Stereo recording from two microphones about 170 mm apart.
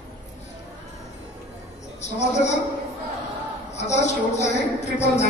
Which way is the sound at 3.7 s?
40° left (ahead or behind).